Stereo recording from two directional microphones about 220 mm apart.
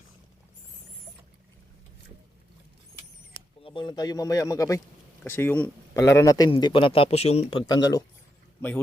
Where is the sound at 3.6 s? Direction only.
20° left (ahead or behind).